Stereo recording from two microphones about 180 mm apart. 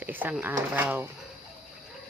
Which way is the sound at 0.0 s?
10° right (ahead or behind).